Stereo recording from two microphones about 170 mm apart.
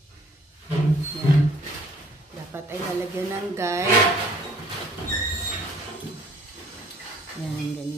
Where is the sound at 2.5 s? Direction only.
15° right (ahead or behind).